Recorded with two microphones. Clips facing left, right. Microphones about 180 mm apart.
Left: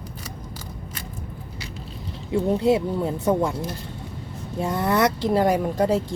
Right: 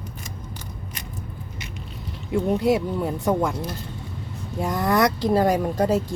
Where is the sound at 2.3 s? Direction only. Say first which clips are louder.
Left 1 dB; 25° left (ahead or behind).